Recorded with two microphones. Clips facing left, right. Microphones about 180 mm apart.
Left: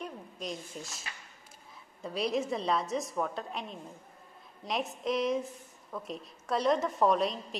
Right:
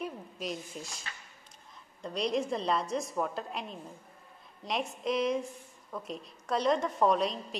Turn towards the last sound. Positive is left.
turn(degrees=0)  # may be behind; listen again after turning